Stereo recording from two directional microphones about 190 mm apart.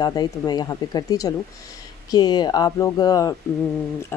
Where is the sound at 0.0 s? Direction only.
20° left (ahead or behind).